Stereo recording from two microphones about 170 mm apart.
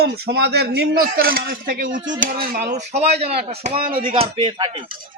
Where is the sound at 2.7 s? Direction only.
40° right (ahead or behind).